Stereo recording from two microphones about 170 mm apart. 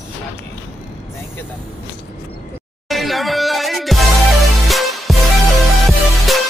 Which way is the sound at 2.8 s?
Centre (ahead or behind).